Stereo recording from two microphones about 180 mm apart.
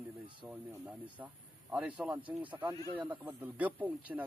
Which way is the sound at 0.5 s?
10° right (ahead or behind).